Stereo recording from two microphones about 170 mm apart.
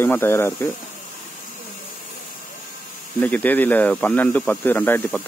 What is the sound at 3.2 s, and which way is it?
Speech, 10° left (ahead or behind).